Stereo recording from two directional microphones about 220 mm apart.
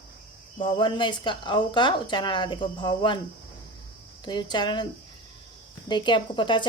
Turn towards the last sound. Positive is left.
turn(degrees=20)  # may be behind; listen again after turning